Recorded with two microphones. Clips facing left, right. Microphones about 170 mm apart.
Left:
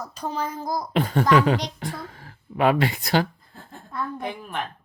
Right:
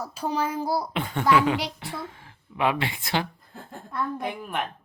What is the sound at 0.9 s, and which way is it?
Speech, 40° left (ahead or behind).